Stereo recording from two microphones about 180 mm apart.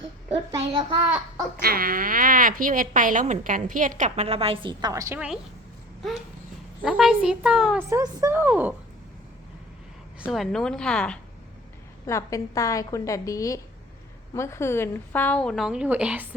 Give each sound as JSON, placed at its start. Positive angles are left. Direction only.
{"t": 0.3, "sound": "a child's voice", "side_deg": -30}
{"t": 1.6, "sound": "speech", "side_deg": -55}
{"t": 6.8, "sound": "a woman's voice", "side_deg": -5}
{"t": 7.8, "sound": "speech", "side_deg": -15}
{"t": 10.2, "sound": "a woman's voice", "side_deg": -5}
{"t": 12.0, "sound": "a woman's voice", "side_deg": 15}